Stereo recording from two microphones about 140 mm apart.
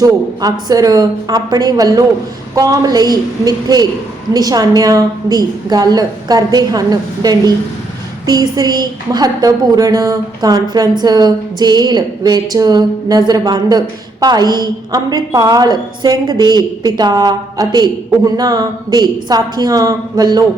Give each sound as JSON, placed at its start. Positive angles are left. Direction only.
{"t": 0.7, "sound": "a woman's voice", "side_deg": -25}